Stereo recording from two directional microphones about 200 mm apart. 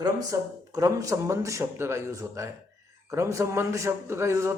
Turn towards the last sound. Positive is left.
turn(degrees=-15)  # may be behind; listen again after turning